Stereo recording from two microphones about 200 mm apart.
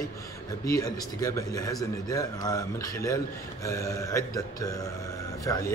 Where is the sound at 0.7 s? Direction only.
15° left (ahead or behind).